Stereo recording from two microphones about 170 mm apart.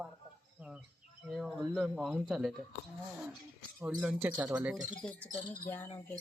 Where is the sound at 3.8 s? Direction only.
Centre (ahead or behind).